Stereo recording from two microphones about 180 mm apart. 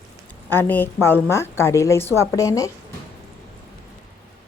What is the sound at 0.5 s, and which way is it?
A woman's voice, 10° left (ahead or behind).